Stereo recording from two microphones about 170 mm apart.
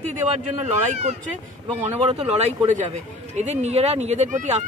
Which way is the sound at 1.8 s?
40° right (ahead or behind).